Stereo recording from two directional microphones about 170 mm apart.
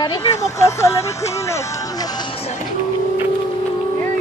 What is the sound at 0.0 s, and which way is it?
Speech, 25° left (ahead or behind).